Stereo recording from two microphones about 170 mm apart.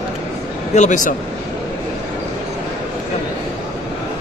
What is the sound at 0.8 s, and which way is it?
Speech, 50° left (ahead or behind).